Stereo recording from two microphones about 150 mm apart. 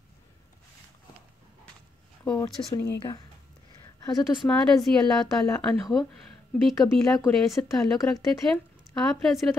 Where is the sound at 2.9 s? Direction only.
30° left (ahead or behind).